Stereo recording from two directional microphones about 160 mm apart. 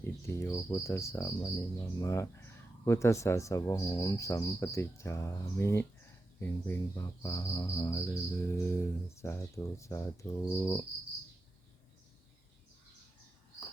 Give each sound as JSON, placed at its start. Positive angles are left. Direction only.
{"t": 0.0, "sound": "cricket", "side_deg": 15}
{"t": 2.8, "sound": "speech", "side_deg": 15}
{"t": 6.4, "sound": "cricket", "side_deg": 15}